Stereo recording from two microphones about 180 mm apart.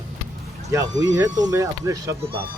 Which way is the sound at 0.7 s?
20° right (ahead or behind).